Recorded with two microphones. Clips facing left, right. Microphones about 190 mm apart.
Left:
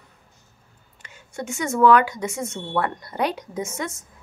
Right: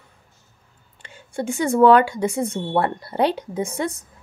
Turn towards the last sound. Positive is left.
turn(degrees=-35)  # may be behind; listen again after turning